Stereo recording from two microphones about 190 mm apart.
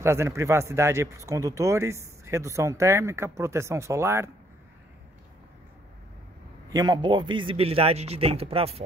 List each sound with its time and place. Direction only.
0.0 s speech: 15° right (ahead or behind)
6.7 s speech: 20° right (ahead or behind)